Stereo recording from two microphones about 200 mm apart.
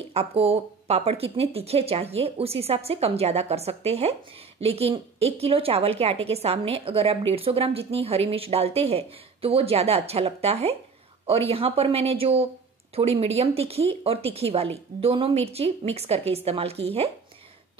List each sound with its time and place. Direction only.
0.1 s a woman's voice: 30° right (ahead or behind)